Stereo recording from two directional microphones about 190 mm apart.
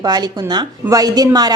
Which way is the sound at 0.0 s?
20° right (ahead or behind).